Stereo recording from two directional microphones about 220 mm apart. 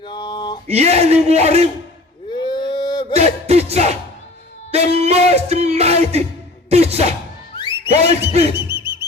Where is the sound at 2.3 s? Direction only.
20° left (ahead or behind).